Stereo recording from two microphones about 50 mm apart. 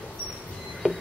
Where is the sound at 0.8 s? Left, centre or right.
Centre.